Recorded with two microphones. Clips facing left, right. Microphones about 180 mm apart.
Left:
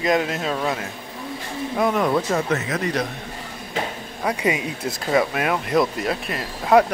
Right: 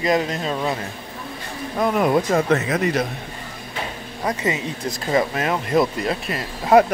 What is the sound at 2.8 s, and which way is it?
Speech, 5° right (ahead or behind).